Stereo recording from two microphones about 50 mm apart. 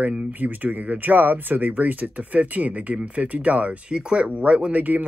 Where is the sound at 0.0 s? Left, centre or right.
Right.